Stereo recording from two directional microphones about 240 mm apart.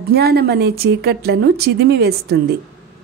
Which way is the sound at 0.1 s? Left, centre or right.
Right.